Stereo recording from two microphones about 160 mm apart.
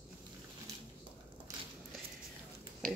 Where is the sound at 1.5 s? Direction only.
20° right (ahead or behind).